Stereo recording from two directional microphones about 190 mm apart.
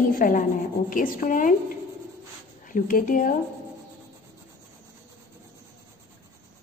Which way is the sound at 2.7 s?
45° left (ahead or behind).